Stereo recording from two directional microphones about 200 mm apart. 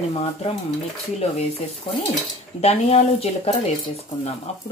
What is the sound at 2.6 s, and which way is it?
Speech, 35° left (ahead or behind).